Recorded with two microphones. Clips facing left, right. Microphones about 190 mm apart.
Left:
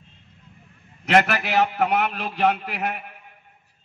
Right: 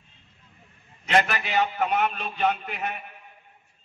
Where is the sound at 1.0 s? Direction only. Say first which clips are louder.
Left 4 dB; 65° left (ahead or behind).